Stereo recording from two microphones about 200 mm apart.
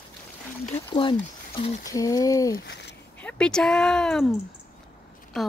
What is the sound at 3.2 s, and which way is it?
Speech, 5° left (ahead or behind).